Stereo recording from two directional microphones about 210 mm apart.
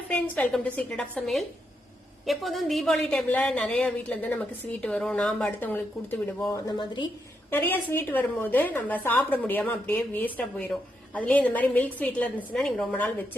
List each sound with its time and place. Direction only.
0.1 s a woman's voice: 5° left (ahead or behind)
6.7 s a woman's voice: 20° left (ahead or behind)
7.5 s a woman's voice: 10° left (ahead or behind)